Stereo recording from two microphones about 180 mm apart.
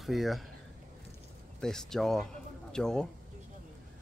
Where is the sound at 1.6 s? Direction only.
5° left (ahead or behind).